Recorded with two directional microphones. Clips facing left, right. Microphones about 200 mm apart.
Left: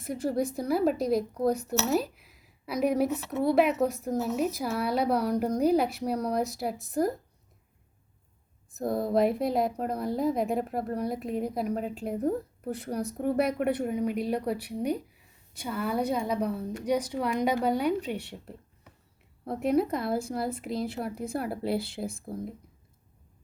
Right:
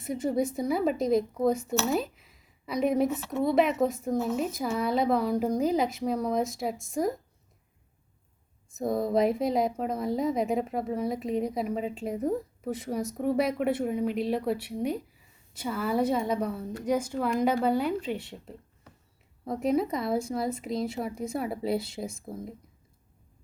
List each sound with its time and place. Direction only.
0.0 s a woman's voice: centre (ahead or behind)
8.8 s a woman's voice: centre (ahead or behind)
21.8 s speech: 60° left (ahead or behind)